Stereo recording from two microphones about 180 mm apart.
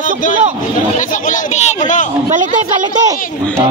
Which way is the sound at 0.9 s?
45° left (ahead or behind).